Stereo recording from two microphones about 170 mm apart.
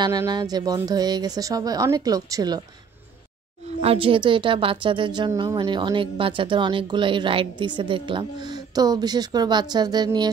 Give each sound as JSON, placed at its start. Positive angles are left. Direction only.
{"t": 0.0, "sound": "a woman's voice", "side_deg": -20}
{"t": 3.8, "sound": "a woman's voice", "side_deg": -35}